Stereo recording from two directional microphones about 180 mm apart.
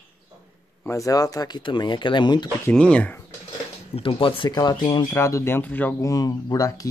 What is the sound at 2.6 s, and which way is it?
Speech, 5° left (ahead or behind).